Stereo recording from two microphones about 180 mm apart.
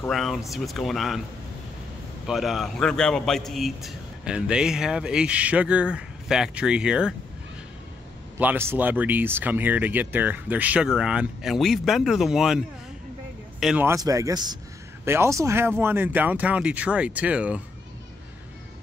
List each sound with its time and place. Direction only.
0.0 s a man's voice: centre (ahead or behind)
2.2 s a man's voice: centre (ahead or behind)
8.4 s speech: 10° right (ahead or behind)
13.8 s speech: 20° right (ahead or behind)